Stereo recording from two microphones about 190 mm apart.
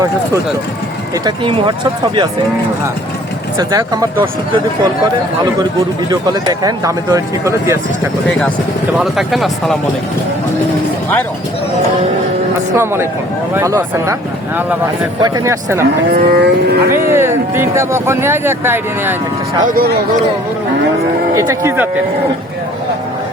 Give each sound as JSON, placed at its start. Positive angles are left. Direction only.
{"t": 1.2, "sound": "speech", "side_deg": -25}
{"t": 3.6, "sound": "speech", "side_deg": -20}
{"t": 6.1, "sound": "speech", "side_deg": -20}
{"t": 8.3, "sound": "speech", "side_deg": 5}
{"t": 12.7, "sound": "speech", "side_deg": -15}
{"t": 16.1, "sound": "livestock", "side_deg": -60}
{"t": 17.1, "sound": "speech", "side_deg": -10}
{"t": 19.6, "sound": "speech", "side_deg": -50}
{"t": 21.3, "sound": "speech", "side_deg": -15}